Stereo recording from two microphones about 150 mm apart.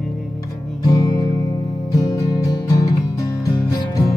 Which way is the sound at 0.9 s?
25° left (ahead or behind).